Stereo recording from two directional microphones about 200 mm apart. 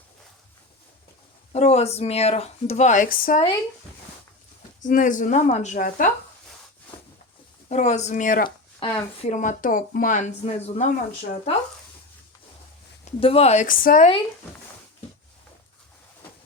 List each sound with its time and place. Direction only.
1.5 s speech: 30° left (ahead or behind)
4.8 s speech: 40° left (ahead or behind)
7.7 s speech: 35° left (ahead or behind)
8.4 s speech: 25° left (ahead or behind)
13.1 s speech: 30° left (ahead or behind)